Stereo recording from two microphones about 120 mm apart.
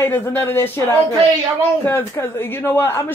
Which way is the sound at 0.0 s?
20° left (ahead or behind).